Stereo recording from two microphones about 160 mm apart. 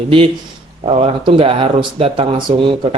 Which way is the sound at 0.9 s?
35° right (ahead or behind).